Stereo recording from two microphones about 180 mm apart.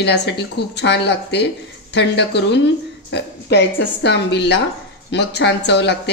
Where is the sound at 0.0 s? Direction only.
70° left (ahead or behind).